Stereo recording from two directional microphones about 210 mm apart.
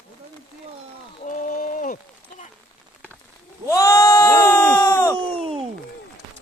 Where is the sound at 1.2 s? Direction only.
40° left (ahead or behind).